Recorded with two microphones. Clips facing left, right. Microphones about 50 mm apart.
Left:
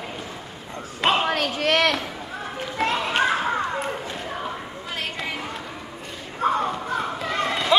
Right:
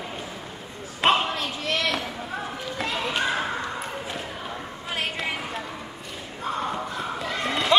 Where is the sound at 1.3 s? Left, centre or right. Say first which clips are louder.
Left 6 dB; left.